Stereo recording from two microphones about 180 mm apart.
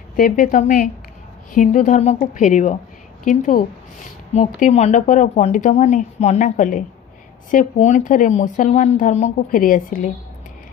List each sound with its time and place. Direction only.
0.1 s speech: 50° left (ahead or behind)